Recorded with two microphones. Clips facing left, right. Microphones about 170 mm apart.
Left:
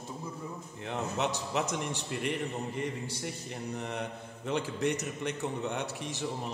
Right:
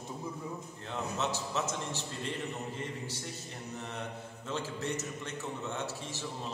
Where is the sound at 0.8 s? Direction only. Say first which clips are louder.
Left 3 dB; 15° left (ahead or behind).